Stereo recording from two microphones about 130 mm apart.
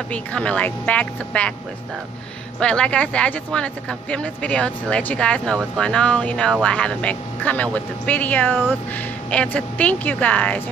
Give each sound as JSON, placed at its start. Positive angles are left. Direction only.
{"t": 0.1, "sound": "speech", "side_deg": 10}
{"t": 2.6, "sound": "speech", "side_deg": 10}